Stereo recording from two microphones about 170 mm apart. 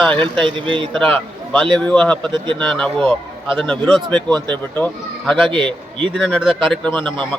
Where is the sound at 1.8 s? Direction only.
5° left (ahead or behind).